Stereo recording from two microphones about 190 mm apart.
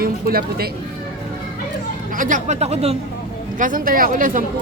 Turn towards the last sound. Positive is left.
turn(degrees=-45)  # may be behind; listen again after turning